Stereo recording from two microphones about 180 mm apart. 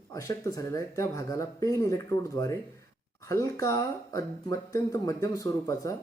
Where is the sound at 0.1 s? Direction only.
20° left (ahead or behind).